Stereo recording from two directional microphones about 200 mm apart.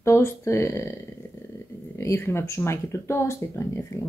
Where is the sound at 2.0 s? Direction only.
15° left (ahead or behind).